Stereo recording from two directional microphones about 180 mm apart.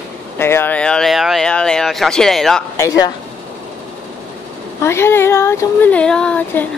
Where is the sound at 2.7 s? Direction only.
15° left (ahead or behind).